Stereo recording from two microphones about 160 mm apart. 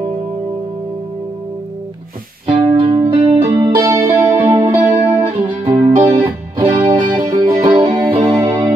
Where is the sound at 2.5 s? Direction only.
30° right (ahead or behind).